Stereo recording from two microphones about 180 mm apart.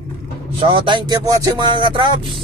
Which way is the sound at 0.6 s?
30° right (ahead or behind).